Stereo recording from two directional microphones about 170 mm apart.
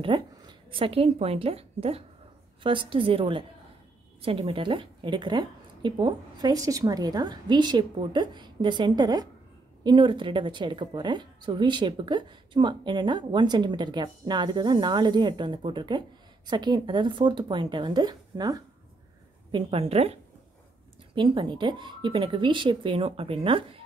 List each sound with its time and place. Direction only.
0.0 s a woman's voice: 30° right (ahead or behind)
19.5 s a woman's voice: 35° right (ahead or behind)